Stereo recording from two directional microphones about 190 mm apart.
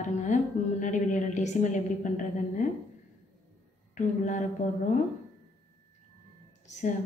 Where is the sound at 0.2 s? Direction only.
40° left (ahead or behind).